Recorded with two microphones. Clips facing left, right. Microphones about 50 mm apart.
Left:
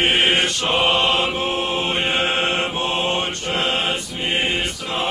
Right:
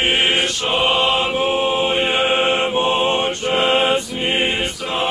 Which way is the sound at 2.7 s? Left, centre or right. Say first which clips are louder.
Right 4 dB; right.